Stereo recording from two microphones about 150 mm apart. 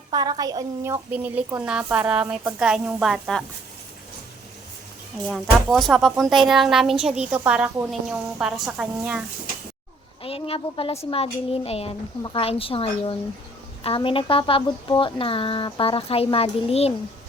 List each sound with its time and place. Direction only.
0.1 s a woman's voice: 25° right (ahead or behind)
1.1 s a woman's voice: 10° right (ahead or behind)
5.2 s speech: 5° left (ahead or behind)
10.2 s a woman's voice: 40° left (ahead or behind)